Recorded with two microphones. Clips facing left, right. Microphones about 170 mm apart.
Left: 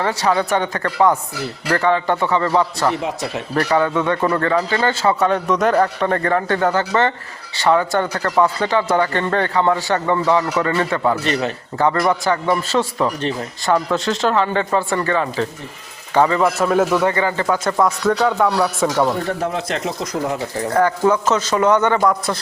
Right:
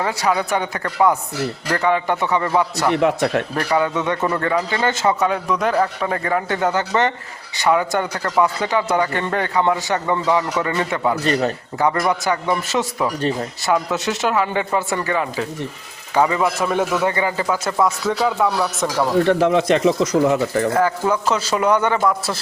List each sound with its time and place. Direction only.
0.0 s speech: 10° right (ahead or behind)
2.9 s speech: 60° right (ahead or behind)
3.5 s speech: 15° right (ahead or behind)
5.2 s speech: 5° right (ahead or behind)
11.2 s a man's voice: 40° right (ahead or behind)
12.0 s speech: 10° right (ahead or behind)
16.4 s speech: centre (ahead or behind)
17.1 s speech: 15° right (ahead or behind)
17.5 s speech: 5° right (ahead or behind)
19.2 s speech: 85° right
21.1 s speech: 10° right (ahead or behind)